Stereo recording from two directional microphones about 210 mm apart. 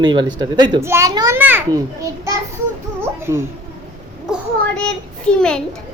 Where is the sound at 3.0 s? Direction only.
10° right (ahead or behind).